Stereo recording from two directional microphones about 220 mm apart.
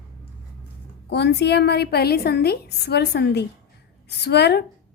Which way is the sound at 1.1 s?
50° left (ahead or behind).